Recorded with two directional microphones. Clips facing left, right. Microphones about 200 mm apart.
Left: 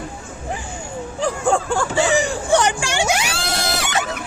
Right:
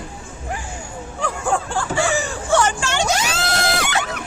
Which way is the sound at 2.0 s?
15° left (ahead or behind).